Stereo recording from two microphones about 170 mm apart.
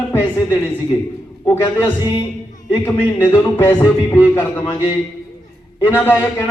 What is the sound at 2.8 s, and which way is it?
A man's voice, 15° left (ahead or behind).